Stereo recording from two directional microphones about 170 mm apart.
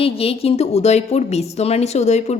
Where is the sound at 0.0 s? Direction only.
35° left (ahead or behind).